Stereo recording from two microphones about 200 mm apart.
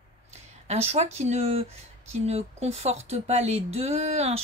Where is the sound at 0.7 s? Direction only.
30° right (ahead or behind).